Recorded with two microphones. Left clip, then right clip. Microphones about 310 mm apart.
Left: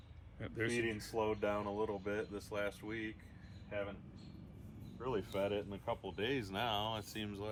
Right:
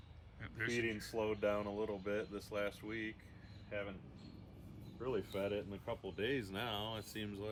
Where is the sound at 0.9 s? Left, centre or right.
Left.